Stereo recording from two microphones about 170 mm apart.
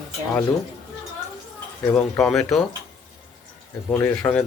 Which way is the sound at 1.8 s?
5° left (ahead or behind).